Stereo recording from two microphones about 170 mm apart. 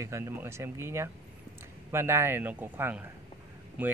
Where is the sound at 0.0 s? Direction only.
15° right (ahead or behind).